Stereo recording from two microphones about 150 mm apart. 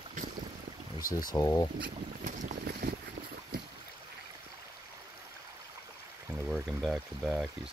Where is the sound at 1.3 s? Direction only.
25° left (ahead or behind).